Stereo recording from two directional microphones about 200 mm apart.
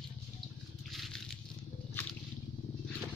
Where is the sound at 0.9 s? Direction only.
Centre (ahead or behind).